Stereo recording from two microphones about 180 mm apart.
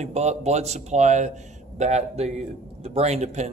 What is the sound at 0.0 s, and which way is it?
A man's voice, 40° right (ahead or behind).